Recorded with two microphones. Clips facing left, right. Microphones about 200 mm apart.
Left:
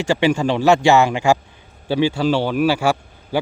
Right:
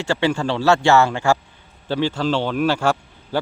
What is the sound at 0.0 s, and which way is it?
Speech, 15° left (ahead or behind).